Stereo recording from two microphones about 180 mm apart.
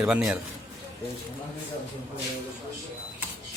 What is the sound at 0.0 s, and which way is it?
Speech, 5° right (ahead or behind).